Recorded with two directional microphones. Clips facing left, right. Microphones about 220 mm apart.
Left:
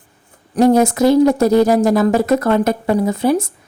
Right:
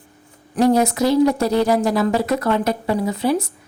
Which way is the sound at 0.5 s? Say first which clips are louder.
Left 4 dB; 50° left (ahead or behind).